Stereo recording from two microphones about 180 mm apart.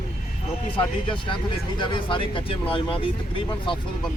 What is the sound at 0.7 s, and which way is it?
Speech, 30° left (ahead or behind).